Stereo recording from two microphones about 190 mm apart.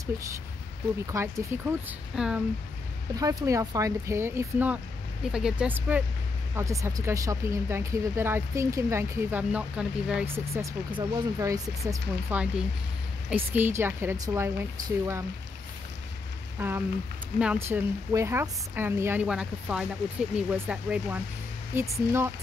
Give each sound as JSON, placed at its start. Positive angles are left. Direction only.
{"t": 1.1, "sound": "speech", "side_deg": -10}
{"t": 3.2, "sound": "speech", "side_deg": -20}
{"t": 10.9, "sound": "speech", "side_deg": -25}
{"t": 16.5, "sound": "rain on surface", "side_deg": -10}
{"t": 17.4, "sound": "speech", "side_deg": -10}